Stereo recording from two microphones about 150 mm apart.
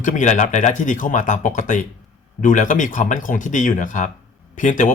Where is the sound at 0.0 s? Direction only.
55° left (ahead or behind).